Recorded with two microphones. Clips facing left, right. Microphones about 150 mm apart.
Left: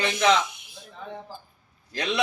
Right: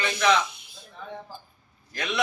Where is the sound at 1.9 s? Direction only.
30° left (ahead or behind).